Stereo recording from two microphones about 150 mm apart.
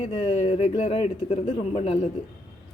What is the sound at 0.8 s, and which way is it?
Speech, 45° left (ahead or behind).